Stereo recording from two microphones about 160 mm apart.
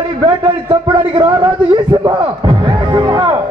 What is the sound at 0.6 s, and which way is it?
Speech, 30° right (ahead or behind).